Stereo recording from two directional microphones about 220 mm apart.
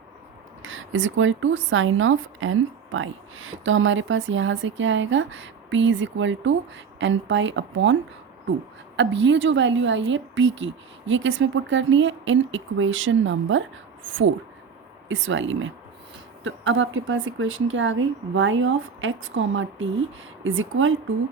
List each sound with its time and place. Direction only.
0.6 s speech: 60° right (ahead or behind)
9.0 s speech: 55° right (ahead or behind)
15.1 s speech: 60° right (ahead or behind)